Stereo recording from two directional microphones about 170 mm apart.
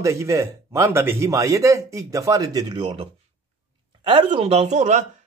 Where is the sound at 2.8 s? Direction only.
40° right (ahead or behind).